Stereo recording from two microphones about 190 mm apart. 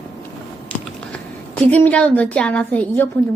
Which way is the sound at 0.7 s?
5° left (ahead or behind).